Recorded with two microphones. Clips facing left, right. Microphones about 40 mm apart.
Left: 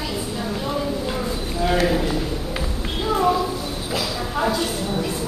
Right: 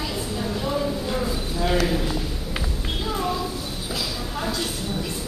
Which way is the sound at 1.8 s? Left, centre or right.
Left.